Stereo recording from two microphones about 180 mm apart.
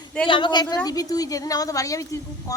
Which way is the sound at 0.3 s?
25° left (ahead or behind).